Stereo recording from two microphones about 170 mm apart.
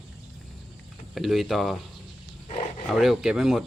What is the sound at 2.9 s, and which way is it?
Speech, centre (ahead or behind).